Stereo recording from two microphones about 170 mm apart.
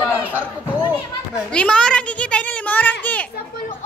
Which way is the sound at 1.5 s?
5° left (ahead or behind).